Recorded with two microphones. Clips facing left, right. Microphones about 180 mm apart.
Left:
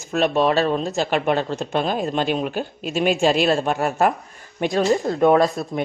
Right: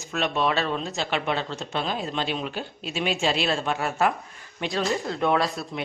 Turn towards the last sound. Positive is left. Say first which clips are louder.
# left 7 dB
turn(degrees=45)  # may be behind; listen again after turning